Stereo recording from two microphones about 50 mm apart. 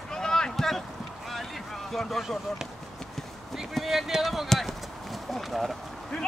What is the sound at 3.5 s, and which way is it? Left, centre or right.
Speech, centre.